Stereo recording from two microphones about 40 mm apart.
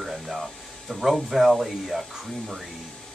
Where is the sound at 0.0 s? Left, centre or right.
Centre.